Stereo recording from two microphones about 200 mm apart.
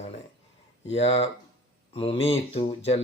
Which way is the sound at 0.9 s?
30° left (ahead or behind).